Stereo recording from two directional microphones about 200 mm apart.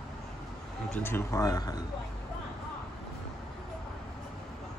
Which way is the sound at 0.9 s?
10° left (ahead or behind).